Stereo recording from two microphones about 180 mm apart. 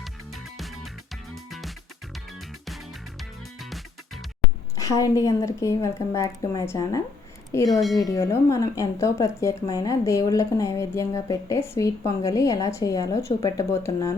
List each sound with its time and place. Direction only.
0.0 s music: centre (ahead or behind)
4.8 s a woman's voice: 20° left (ahead or behind)